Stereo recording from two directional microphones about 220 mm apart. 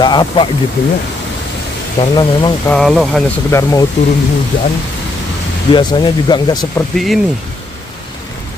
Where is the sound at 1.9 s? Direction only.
20° left (ahead or behind).